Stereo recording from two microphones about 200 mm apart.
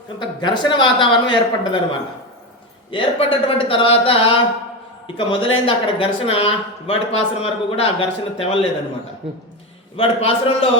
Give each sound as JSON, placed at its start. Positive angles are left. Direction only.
{"t": 0.2, "sound": "a woman's voice", "side_deg": 25}
{"t": 2.9, "sound": "a woman's voice", "side_deg": 25}
{"t": 10.0, "sound": "a woman's voice", "side_deg": 30}